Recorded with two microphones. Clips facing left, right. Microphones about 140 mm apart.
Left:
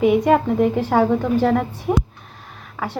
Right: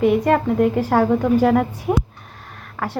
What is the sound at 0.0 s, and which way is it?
A woman's voice, 5° left (ahead or behind).